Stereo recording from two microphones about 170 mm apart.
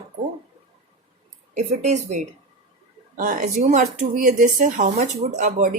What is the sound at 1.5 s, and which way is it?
Speech, 40° right (ahead or behind).